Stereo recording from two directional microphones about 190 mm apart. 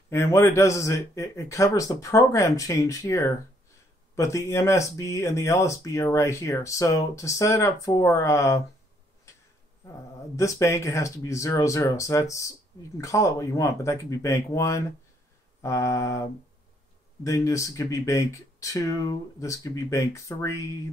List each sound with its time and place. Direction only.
0.1 s speech: 15° left (ahead or behind)
10.3 s speech: 15° left (ahead or behind)